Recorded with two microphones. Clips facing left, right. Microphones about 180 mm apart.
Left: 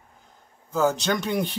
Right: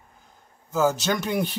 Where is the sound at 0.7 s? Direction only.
5° right (ahead or behind).